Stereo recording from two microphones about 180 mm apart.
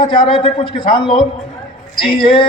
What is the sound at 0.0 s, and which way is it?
A man's voice, 25° left (ahead or behind).